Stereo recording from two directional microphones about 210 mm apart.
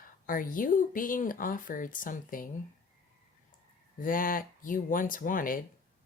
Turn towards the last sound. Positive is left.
turn(degrees=40)  # may be behind; listen again after turning